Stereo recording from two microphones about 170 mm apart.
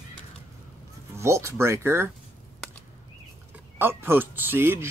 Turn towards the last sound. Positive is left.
turn(degrees=-15)  # may be behind; listen again after turning